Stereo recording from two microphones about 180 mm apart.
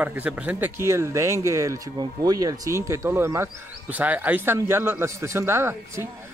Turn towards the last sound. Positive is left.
turn(degrees=-15)  # may be behind; listen again after turning